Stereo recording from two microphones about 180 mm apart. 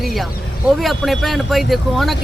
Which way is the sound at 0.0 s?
Centre (ahead or behind).